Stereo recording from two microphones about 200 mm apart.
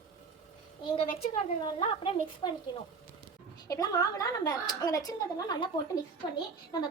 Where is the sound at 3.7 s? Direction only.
20° left (ahead or behind).